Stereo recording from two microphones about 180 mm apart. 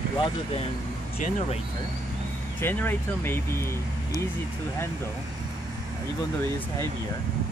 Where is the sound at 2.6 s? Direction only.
10° left (ahead or behind).